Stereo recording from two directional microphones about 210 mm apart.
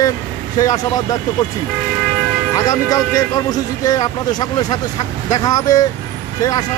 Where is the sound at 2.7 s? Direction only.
20° left (ahead or behind).